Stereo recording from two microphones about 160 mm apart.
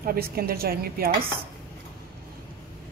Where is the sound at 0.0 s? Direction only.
70° right (ahead or behind).